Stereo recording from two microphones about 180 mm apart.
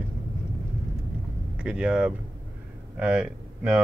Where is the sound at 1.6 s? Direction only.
5° right (ahead or behind).